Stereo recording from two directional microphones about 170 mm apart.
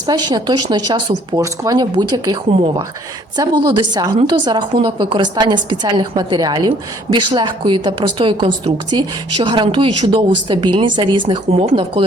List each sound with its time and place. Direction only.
0.0 s a woman's voice: 25° right (ahead or behind)